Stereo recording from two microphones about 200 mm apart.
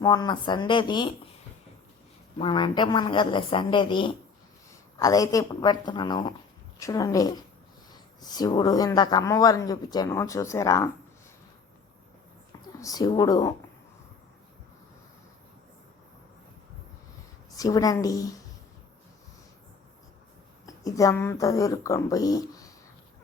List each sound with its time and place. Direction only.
0.0 s speech: 20° left (ahead or behind)
2.4 s a man's voice: 25° left (ahead or behind)
12.8 s speech: 20° left (ahead or behind)
17.6 s a man's voice: 20° left (ahead or behind)
20.7 s speech: 15° left (ahead or behind)